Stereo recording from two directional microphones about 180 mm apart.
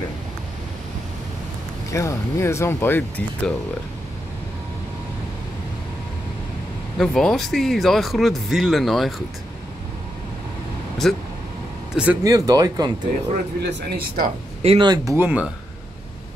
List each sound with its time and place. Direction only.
1.9 s speech: 15° left (ahead or behind)
7.0 s speech: centre (ahead or behind)
11.0 s speech: centre (ahead or behind)
12.2 s speech: 20° right (ahead or behind)
13.6 s speech: 70° right (ahead or behind); by 14.3 s 55° right (ahead or behind)
14.6 s speech: 30° right (ahead or behind)
15.1 s speech: 10° right (ahead or behind)